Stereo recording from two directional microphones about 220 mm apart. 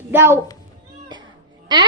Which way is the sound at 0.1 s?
10° right (ahead or behind).